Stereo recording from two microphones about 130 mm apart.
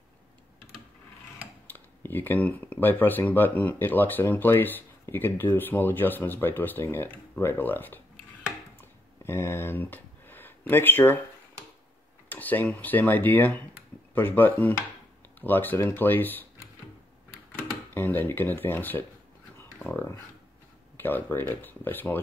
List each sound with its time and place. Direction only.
1.7 s speech: 15° left (ahead or behind)
9.2 s speech: 20° left (ahead or behind)
12.3 s speech: 15° left (ahead or behind)
17.5 s a sound: 15° left (ahead or behind)
21.0 s speech: 15° left (ahead or behind)